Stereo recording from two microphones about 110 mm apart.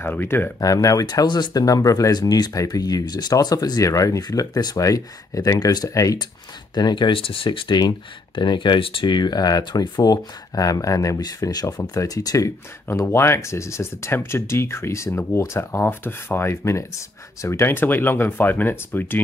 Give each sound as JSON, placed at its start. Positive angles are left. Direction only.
{"t": 0.0, "sound": "speech", "side_deg": 20}
{"t": 0.6, "sound": "speech", "side_deg": 35}